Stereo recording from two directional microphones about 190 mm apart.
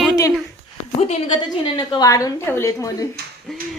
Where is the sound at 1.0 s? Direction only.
35° left (ahead or behind).